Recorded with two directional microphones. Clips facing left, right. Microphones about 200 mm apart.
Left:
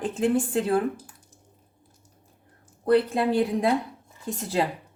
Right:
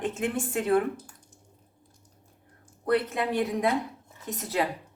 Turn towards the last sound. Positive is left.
turn(degrees=30)  # may be behind; listen again after turning